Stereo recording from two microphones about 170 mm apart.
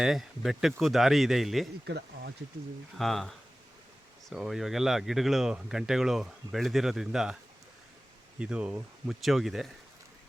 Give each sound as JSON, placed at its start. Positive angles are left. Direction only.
{"t": 0.0, "sound": "speech", "side_deg": 0}
{"t": 1.9, "sound": "speech", "side_deg": -90}
{"t": 3.0, "sound": "speech", "side_deg": 0}
{"t": 8.4, "sound": "speech", "side_deg": -5}